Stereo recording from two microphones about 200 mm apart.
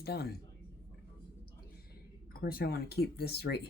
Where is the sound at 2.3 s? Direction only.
50° left (ahead or behind).